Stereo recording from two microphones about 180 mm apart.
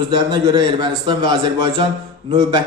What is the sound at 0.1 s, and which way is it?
A man's voice, 25° right (ahead or behind).